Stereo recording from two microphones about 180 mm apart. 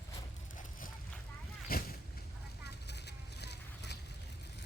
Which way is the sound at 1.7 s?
55° left (ahead or behind).